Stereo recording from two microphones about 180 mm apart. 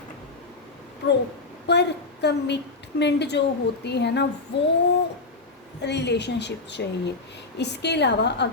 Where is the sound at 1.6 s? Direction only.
70° left (ahead or behind).